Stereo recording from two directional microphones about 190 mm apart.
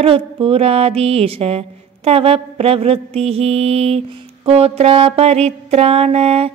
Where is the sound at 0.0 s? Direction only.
30° right (ahead or behind).